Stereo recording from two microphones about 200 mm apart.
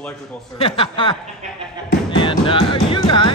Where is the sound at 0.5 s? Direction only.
30° left (ahead or behind).